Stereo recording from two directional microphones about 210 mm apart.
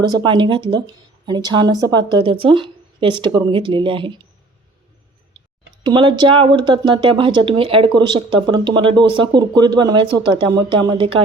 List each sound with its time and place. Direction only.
0.1 s a woman's voice: 20° right (ahead or behind)
5.8 s a woman's voice: 20° right (ahead or behind)